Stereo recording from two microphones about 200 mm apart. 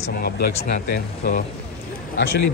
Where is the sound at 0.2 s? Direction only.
50° left (ahead or behind).